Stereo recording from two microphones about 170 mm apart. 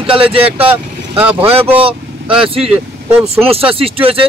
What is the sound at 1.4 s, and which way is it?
Speech, 30° right (ahead or behind).